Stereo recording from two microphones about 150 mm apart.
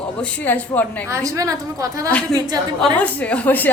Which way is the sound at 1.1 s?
20° right (ahead or behind).